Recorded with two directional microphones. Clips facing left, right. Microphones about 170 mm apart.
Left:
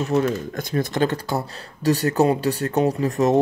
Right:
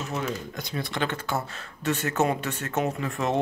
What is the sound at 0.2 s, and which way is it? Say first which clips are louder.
Speech: left 8 dB; 50° left (ahead or behind).